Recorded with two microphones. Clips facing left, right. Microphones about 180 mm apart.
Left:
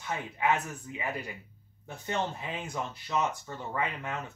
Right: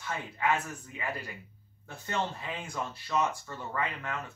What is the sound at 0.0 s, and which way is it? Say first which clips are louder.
Speech: left 1 dB; 20° left (ahead or behind).